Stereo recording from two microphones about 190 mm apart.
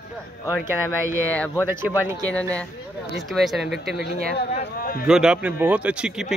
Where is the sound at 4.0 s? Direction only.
60° left (ahead or behind).